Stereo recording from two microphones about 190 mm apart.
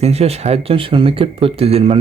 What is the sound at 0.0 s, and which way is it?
Speech, 35° right (ahead or behind).